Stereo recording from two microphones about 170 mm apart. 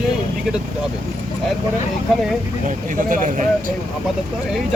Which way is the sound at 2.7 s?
50° right (ahead or behind).